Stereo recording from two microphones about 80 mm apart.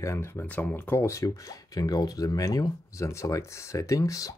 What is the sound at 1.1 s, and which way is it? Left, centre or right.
Speech, left.